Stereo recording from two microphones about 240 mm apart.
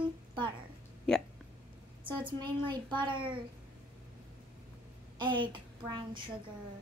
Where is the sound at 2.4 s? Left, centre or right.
Centre.